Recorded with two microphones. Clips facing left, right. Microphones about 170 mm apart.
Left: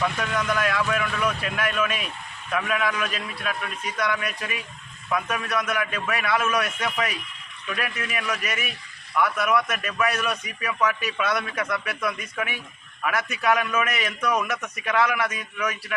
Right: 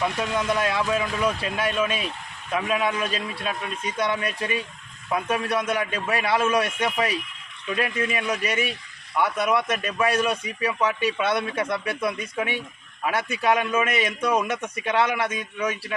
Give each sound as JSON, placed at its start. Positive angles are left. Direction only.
{"t": 0.0, "sound": "a man's voice", "side_deg": -25}